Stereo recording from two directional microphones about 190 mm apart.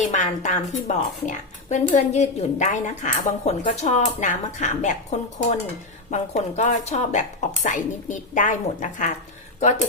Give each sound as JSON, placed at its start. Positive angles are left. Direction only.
{"t": 0.0, "sound": "a woman's voice", "side_deg": 40}
{"t": 6.1, "sound": "a woman's voice", "side_deg": 40}